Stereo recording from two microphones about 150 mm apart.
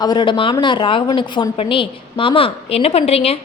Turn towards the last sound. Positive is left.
turn(degrees=40)  # may be behind; listen again after turning